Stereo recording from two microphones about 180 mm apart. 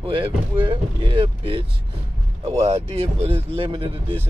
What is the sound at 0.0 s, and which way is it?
A man's voice, 30° right (ahead or behind).